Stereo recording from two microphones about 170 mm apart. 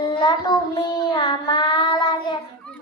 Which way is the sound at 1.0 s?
25° left (ahead or behind).